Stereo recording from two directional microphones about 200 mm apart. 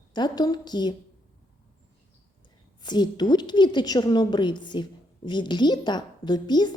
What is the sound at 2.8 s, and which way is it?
A woman's voice, 20° left (ahead or behind).